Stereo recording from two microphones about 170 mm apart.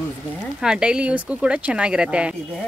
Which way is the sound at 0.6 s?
5° right (ahead or behind).